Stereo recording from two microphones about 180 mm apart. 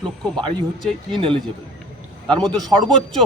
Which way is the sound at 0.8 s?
Centre (ahead or behind).